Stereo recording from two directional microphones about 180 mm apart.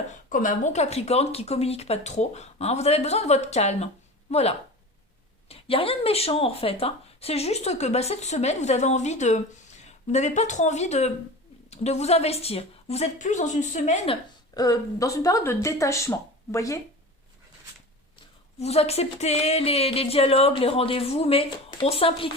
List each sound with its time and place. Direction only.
0.1 s speech: 50° left (ahead or behind)
14.5 s speech: 20° left (ahead or behind)
18.6 s speech: 35° left (ahead or behind)